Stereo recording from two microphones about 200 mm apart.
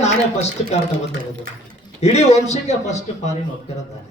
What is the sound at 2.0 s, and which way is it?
A man's voice, 35° left (ahead or behind).